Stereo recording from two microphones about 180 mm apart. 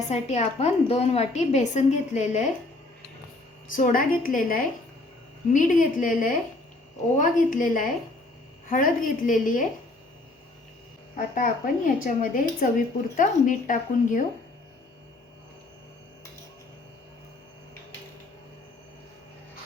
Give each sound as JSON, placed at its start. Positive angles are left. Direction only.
{"t": 0.1, "sound": "a woman's voice", "side_deg": 40}
{"t": 3.7, "sound": "a woman's voice", "side_deg": 50}
{"t": 11.3, "sound": "a woman's voice", "side_deg": 50}